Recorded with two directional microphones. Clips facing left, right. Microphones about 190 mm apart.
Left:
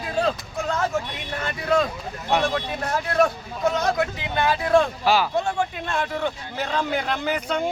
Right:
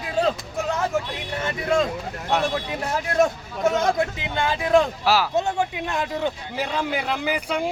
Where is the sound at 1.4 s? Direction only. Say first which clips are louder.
Even; 25° right (ahead or behind).